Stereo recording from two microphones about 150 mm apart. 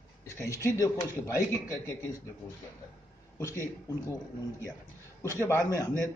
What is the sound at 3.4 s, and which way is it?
Speech, 15° left (ahead or behind).